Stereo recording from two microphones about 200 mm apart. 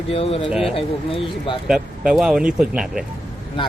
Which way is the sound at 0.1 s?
30° left (ahead or behind).